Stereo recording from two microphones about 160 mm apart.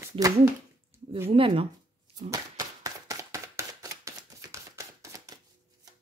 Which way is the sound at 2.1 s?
20° right (ahead or behind).